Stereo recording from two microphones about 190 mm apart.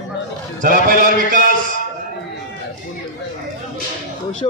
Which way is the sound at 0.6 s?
50° right (ahead or behind).